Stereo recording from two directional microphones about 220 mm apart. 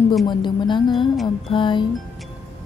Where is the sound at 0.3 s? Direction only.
20° left (ahead or behind).